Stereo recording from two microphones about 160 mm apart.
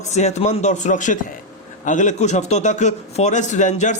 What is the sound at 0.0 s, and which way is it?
A man's voice, 45° left (ahead or behind).